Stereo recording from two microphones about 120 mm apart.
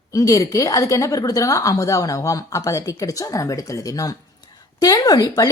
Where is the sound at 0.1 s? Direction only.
30° left (ahead or behind).